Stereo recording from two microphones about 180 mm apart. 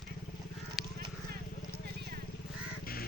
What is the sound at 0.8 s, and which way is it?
Horse, centre (ahead or behind).